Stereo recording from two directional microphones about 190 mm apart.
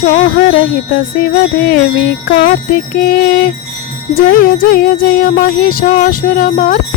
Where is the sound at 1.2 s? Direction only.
50° left (ahead or behind).